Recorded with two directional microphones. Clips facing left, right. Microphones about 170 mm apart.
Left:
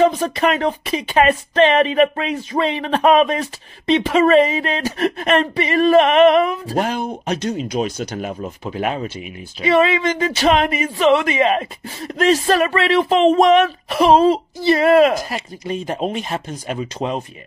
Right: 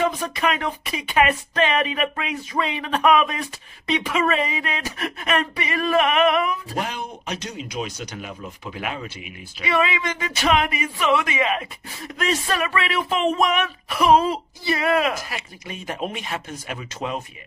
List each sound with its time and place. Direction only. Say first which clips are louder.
0.0 s speech: left 7 dB; 35° left (ahead or behind)